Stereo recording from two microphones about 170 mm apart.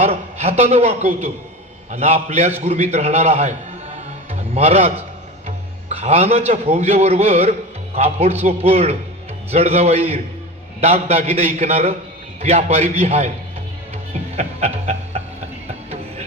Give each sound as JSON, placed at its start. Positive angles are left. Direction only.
{"t": 0.0, "sound": "a man's voice", "side_deg": -40}
{"t": 13.9, "sound": "music", "side_deg": -40}